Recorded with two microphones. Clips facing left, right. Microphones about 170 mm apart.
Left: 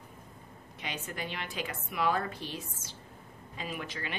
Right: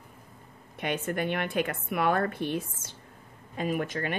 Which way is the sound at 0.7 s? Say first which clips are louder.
Right 10 dB; 55° right (ahead or behind).